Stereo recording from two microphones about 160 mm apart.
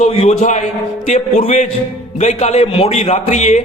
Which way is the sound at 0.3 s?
50° left (ahead or behind).